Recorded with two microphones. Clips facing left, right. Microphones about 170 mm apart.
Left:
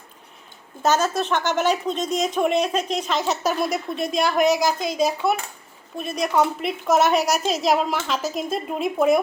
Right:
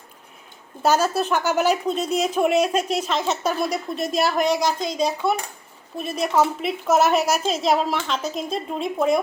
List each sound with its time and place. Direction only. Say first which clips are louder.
0.8 s a woman's voice: right 1 dB; 10° right (ahead or behind)